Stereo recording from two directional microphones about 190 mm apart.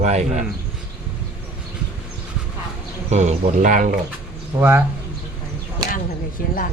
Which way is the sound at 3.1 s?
35° right (ahead or behind).